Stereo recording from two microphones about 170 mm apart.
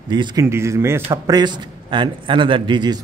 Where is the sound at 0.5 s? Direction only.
15° right (ahead or behind).